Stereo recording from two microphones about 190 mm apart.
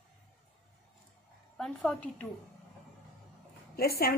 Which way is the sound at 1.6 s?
Centre (ahead or behind).